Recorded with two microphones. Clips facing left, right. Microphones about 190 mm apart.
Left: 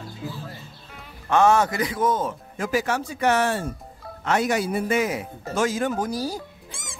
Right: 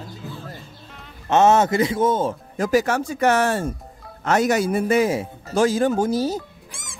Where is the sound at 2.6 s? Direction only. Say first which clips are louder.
Right 5 dB; 40° right (ahead or behind); by 6.4 s 25° right (ahead or behind).